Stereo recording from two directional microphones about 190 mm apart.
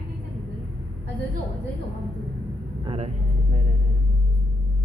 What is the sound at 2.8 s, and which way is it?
Speech, 35° right (ahead or behind).